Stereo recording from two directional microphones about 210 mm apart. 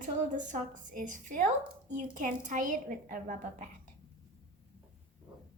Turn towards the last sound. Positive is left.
turn(degrees=-35)  # may be behind; listen again after turning